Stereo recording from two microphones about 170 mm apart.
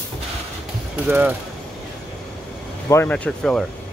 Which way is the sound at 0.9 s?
10° right (ahead or behind).